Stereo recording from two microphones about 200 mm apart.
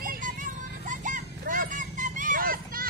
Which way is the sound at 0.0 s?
40° right (ahead or behind).